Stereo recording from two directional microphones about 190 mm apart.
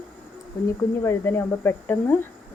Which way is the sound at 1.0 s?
15° left (ahead or behind).